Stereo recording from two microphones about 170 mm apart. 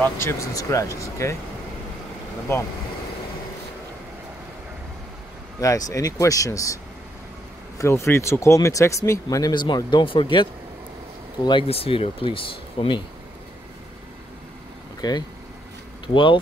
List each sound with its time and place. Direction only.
0.0 s speech: 15° left (ahead or behind)
5.6 s speech: 20° left (ahead or behind)
15.0 s speech: 25° left (ahead or behind)